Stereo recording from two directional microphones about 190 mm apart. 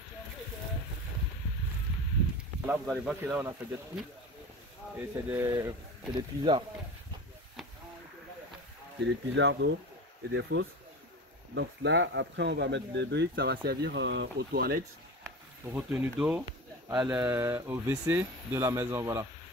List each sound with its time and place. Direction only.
2.6 s speech: 5° right (ahead or behind)
5.1 s speech: 15° right (ahead or behind)
9.3 s speech: 70° right (ahead or behind); by 14.8 s 55° right (ahead or behind)
15.6 s speech: 10° right (ahead or behind)